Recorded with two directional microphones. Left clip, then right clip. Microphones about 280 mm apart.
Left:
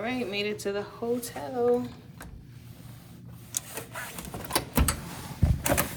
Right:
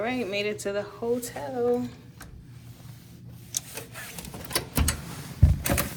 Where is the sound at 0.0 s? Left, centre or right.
Centre.